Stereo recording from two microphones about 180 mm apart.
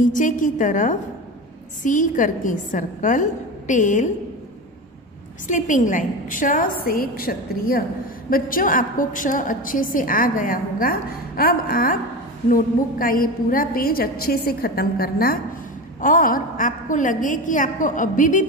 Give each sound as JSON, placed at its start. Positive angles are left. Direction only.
{"t": 0.0, "sound": "a woman's voice", "side_deg": 45}
{"t": 5.5, "sound": "a woman's voice", "side_deg": 45}